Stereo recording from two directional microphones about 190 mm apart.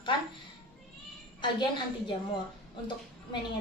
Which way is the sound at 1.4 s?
25° left (ahead or behind).